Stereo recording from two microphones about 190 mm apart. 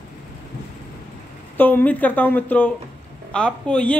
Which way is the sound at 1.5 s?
10° left (ahead or behind).